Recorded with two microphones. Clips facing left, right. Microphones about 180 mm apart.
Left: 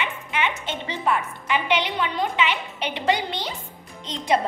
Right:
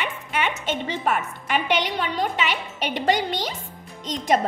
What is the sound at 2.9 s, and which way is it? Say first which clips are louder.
Speech: right 2 dB; 45° right (ahead or behind).